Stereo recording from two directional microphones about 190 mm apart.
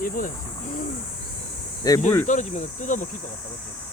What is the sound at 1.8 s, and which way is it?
Speech, 20° left (ahead or behind).